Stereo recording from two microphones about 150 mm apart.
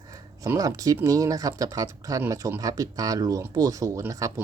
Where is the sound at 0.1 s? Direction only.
20° right (ahead or behind).